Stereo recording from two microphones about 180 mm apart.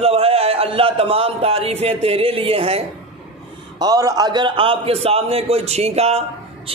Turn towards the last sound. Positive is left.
turn(degrees=-35)  # may be behind; listen again after turning